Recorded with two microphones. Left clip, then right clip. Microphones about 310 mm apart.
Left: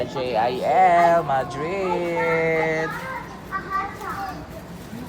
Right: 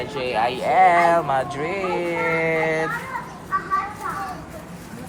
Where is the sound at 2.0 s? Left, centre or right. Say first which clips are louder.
Even; centre.